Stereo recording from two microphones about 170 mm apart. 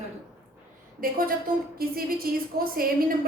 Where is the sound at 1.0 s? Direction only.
55° right (ahead or behind).